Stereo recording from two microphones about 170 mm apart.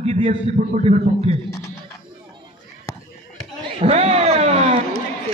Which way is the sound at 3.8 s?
40° right (ahead or behind).